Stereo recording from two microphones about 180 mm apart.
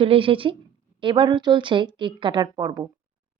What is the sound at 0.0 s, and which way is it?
A woman's voice, 30° right (ahead or behind).